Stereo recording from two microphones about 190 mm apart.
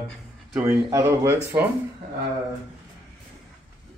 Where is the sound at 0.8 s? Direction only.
15° right (ahead or behind).